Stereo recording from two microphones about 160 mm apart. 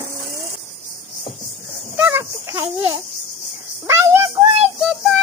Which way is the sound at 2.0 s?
15° right (ahead or behind).